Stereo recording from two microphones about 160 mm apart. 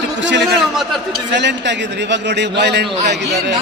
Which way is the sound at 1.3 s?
90° right.